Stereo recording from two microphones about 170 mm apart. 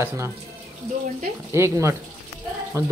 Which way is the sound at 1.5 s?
15° right (ahead or behind).